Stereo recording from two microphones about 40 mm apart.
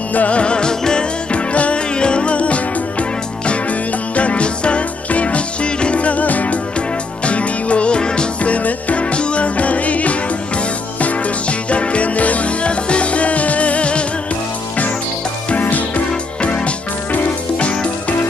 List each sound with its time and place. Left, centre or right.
0.1 s music: left
0.4 s music: left
1.3 s music: left
8.5 s music: left
15.6 s music: left
16.1 s music: left